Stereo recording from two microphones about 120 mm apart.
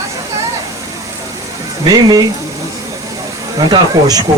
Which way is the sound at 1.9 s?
35° right (ahead or behind).